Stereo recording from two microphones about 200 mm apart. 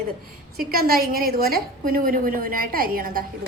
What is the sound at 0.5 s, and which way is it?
A woman's voice, 50° right (ahead or behind).